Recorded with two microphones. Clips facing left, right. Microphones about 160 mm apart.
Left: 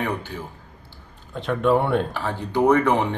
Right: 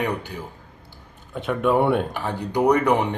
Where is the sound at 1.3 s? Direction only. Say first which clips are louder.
Left 1 dB; 5° right (ahead or behind).